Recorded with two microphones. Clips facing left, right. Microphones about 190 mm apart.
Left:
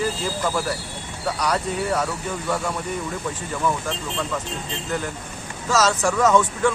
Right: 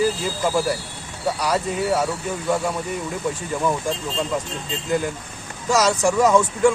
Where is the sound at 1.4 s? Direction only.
5° right (ahead or behind).